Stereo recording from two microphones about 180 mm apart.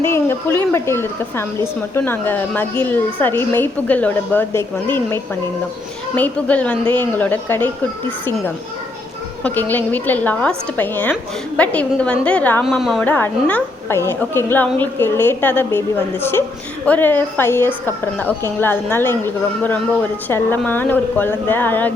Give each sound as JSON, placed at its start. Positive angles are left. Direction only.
{"t": 0.0, "sound": "a woman's voice", "side_deg": 15}
{"t": 9.4, "sound": "a woman's voice", "side_deg": 10}
{"t": 12.6, "sound": "a woman's voice", "side_deg": 0}